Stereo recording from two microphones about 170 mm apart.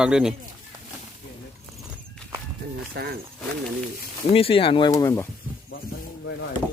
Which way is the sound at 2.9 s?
65° right (ahead or behind).